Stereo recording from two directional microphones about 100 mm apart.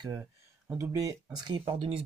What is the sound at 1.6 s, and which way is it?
Speech, 75° right (ahead or behind).